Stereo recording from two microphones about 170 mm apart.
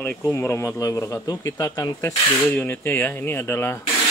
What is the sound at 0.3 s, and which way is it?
Speech, 15° left (ahead or behind).